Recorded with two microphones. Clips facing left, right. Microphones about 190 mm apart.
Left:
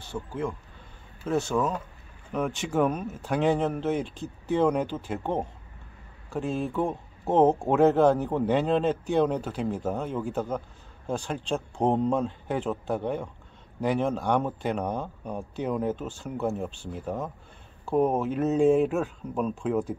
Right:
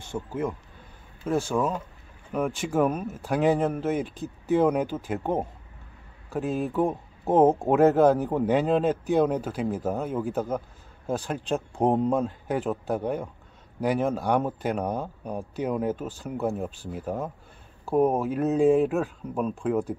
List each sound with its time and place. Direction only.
0.1 s speech: 15° right (ahead or behind)
1.2 s speech: 5° right (ahead or behind)